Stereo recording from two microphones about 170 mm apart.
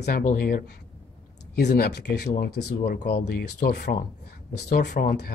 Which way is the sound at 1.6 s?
75° left (ahead or behind).